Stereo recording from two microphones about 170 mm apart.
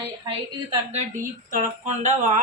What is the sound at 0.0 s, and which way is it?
Speech, 25° right (ahead or behind).